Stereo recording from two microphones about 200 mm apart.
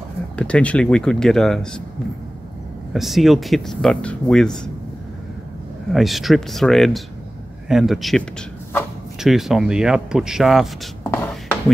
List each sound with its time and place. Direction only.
0.4 s speech: 5° left (ahead or behind)
2.9 s speech: centre (ahead or behind)
5.9 s speech: centre (ahead or behind)
9.2 s speech: centre (ahead or behind)
11.1 s a sound: 5° left (ahead or behind)